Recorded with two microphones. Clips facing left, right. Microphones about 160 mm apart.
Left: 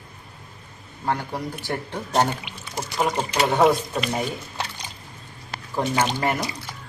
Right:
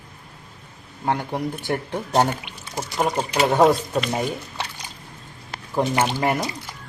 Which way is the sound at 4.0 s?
Centre (ahead or behind).